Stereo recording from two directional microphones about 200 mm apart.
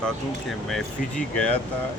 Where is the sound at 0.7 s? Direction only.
5° left (ahead or behind).